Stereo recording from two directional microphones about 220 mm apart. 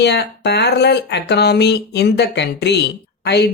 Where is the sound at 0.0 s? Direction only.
50° left (ahead or behind).